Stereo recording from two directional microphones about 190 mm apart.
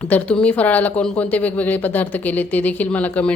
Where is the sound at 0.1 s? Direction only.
5° left (ahead or behind).